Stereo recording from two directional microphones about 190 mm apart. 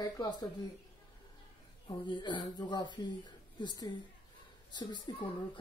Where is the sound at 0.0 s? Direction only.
20° left (ahead or behind).